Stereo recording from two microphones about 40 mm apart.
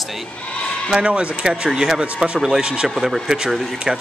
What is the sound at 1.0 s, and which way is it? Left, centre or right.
Speech, right.